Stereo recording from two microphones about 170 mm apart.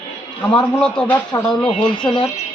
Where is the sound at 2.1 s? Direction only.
30° left (ahead or behind).